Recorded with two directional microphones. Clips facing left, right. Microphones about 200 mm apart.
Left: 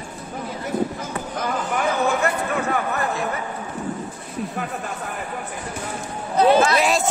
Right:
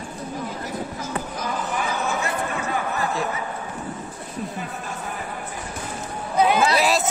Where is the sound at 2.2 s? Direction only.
60° left (ahead or behind).